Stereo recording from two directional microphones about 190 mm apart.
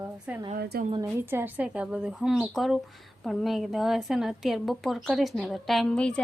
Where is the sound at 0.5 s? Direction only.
50° right (ahead or behind).